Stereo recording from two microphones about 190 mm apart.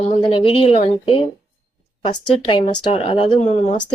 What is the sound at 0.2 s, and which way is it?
Speech, 30° left (ahead or behind).